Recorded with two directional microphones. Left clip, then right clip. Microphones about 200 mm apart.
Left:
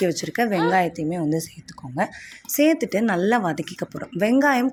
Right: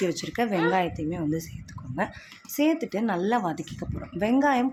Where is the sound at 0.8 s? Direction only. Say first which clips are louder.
Left 5 dB; 25° left (ahead or behind).